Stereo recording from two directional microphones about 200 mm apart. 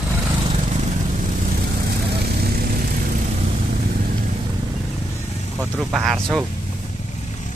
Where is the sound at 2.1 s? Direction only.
50° right (ahead or behind).